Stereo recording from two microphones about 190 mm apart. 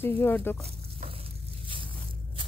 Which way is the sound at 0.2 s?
10° left (ahead or behind).